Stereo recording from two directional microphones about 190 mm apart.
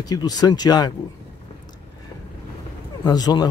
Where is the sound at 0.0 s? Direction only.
20° left (ahead or behind).